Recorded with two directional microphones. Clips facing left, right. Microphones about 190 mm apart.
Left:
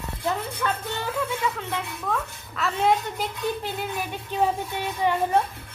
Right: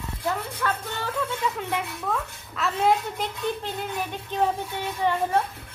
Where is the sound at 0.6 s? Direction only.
20° left (ahead or behind).